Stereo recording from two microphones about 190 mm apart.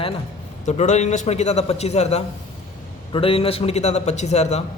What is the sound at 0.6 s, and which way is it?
Speech, 40° left (ahead or behind).